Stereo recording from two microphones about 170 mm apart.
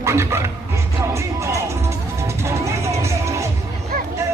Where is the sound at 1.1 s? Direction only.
15° right (ahead or behind).